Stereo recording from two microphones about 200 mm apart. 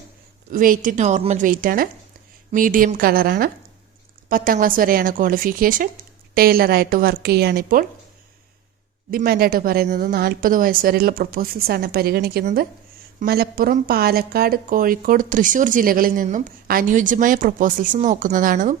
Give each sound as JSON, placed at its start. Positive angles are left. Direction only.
{"t": 0.5, "sound": "a woman's voice", "side_deg": -45}
{"t": 9.0, "sound": "a woman's voice", "side_deg": -50}